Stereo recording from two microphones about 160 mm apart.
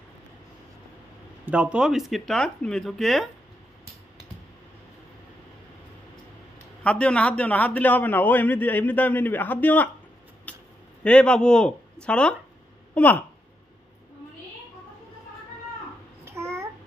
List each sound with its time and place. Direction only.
1.4 s speech: 5° right (ahead or behind)
6.8 s a man's voice: 5° left (ahead or behind)
10.5 s a sound: 10° left (ahead or behind)
11.1 s speech: 5° left (ahead or behind)
16.3 s babbling: 15° right (ahead or behind)